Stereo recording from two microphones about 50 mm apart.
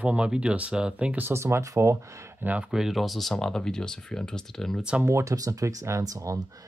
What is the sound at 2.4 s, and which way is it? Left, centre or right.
Speech, right.